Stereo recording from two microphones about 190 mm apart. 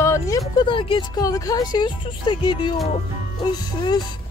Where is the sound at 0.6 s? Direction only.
25° left (ahead or behind).